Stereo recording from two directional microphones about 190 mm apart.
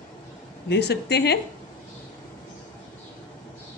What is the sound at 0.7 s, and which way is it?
Speech, 60° left (ahead or behind).